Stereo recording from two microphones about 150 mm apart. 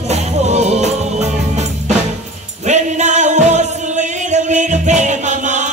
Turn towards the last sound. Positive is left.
turn(degrees=-55)  # may be behind; listen again after turning